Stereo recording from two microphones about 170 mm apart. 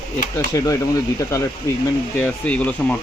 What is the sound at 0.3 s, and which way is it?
Speech, 20° left (ahead or behind).